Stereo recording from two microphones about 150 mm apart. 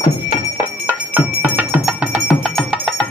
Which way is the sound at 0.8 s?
15° right (ahead or behind).